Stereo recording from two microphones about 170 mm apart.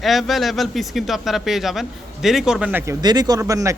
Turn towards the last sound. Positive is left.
turn(degrees=-20)  # may be behind; listen again after turning